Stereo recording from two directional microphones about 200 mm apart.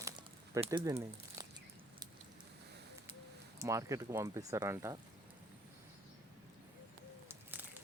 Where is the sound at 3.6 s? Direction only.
15° right (ahead or behind).